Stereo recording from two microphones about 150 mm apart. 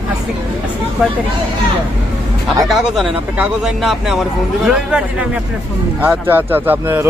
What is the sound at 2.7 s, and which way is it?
Speech, centre (ahead or behind).